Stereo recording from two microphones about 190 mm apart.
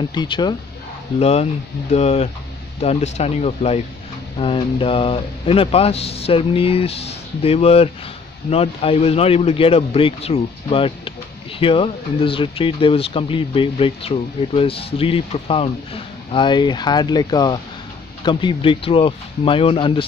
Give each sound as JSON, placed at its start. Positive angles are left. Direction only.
{"t": 0.1, "sound": "speech", "side_deg": 20}
{"t": 1.2, "sound": "a man's voice", "side_deg": 35}